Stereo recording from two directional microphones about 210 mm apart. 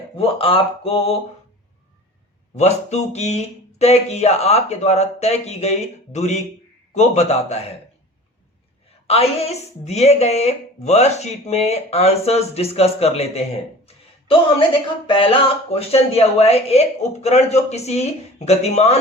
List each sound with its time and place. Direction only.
0.2 s speech: 25° left (ahead or behind)
2.6 s speech: 30° left (ahead or behind)
9.0 s speech: 30° left (ahead or behind)
15.0 s speech: 25° left (ahead or behind)